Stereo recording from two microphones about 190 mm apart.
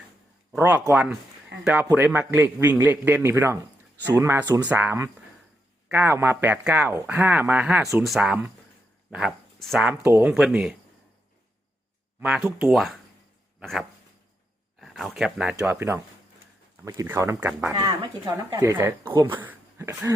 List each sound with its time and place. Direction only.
0.5 s a man's voice: 10° right (ahead or behind)
12.2 s a man's voice: 5° right (ahead or behind)
17.7 s a man's voice: 20° right (ahead or behind)